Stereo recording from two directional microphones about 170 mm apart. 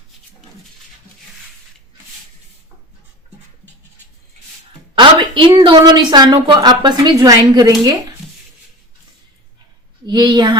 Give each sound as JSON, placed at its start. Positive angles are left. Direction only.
{"t": 4.9, "sound": "a woman's voice", "side_deg": -30}
{"t": 10.1, "sound": "a woman's voice", "side_deg": -25}